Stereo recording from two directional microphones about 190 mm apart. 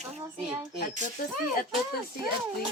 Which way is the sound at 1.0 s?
50° left (ahead or behind).